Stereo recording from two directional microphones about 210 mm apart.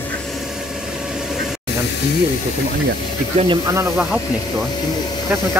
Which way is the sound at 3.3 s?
25° right (ahead or behind).